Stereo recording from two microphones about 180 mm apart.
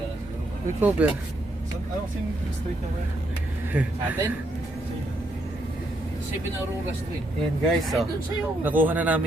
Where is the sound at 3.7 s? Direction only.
15° right (ahead or behind).